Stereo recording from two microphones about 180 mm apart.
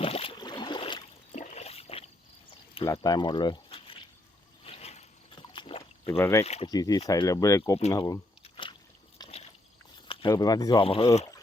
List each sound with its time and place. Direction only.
0.0 s boat: 30° left (ahead or behind)
1.3 s a sound: 40° left (ahead or behind)
2.8 s speech: 20° left (ahead or behind)
4.6 s boat: 35° left (ahead or behind)
6.1 s speech: 10° left (ahead or behind)
6.4 s speech: 35° left (ahead or behind)
6.7 s speech: 20° left (ahead or behind)
10.1 s a sound: 30° left (ahead or behind)
10.3 s speech: 20° left (ahead or behind)